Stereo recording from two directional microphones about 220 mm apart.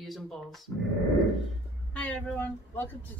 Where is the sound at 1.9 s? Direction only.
5° left (ahead or behind).